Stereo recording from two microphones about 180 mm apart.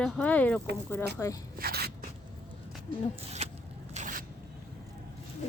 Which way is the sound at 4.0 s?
45° right (ahead or behind).